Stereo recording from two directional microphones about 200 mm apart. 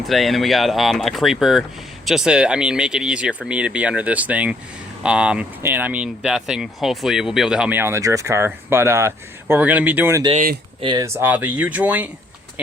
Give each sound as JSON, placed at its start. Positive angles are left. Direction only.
{"t": 0.0, "sound": "speech", "side_deg": 0}
{"t": 10.3, "sound": "speech", "side_deg": -45}
{"t": 10.8, "sound": "speech", "side_deg": -20}